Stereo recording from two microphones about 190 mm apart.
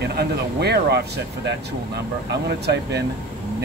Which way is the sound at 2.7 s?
60° right (ahead or behind).